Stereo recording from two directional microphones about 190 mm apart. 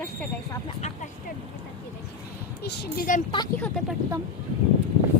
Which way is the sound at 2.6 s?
60° left (ahead or behind).